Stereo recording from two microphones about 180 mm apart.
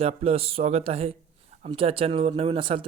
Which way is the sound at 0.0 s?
35° right (ahead or behind).